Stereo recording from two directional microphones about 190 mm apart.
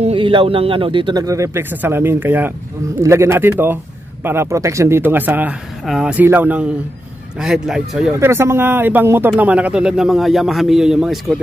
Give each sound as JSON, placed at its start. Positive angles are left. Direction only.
{"t": 0.0, "sound": "a man's voice", "side_deg": -30}